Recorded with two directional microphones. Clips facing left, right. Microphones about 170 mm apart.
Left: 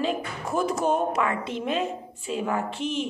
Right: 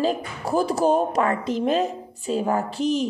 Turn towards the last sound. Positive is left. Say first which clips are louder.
# right 5 dB
turn(degrees=-40)  # may be behind; listen again after turning